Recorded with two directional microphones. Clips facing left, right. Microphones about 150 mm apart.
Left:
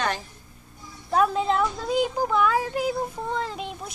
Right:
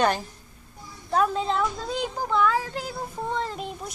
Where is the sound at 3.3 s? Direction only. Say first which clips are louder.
Even; centre (ahead or behind).